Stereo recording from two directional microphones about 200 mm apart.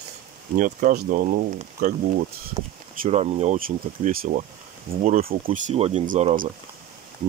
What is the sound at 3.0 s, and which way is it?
Speech, 30° right (ahead or behind).